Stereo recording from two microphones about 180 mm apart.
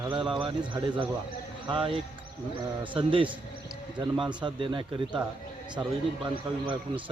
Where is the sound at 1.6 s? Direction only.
30° right (ahead or behind).